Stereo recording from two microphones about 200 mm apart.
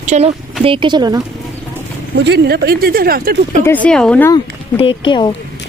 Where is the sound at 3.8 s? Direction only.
5° left (ahead or behind).